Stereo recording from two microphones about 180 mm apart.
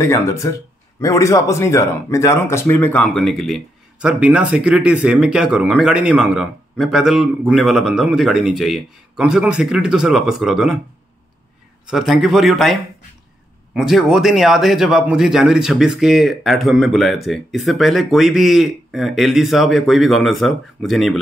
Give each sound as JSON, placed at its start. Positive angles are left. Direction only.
{"t": 0.0, "sound": "speech", "side_deg": 15}
{"t": 11.8, "sound": "speech", "side_deg": 0}
{"t": 13.7, "sound": "speech", "side_deg": -5}